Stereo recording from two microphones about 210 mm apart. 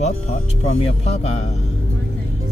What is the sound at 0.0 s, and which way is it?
Speech, 30° left (ahead or behind).